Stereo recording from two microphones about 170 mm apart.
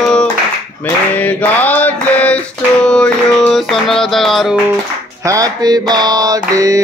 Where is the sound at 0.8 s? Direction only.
10° left (ahead or behind).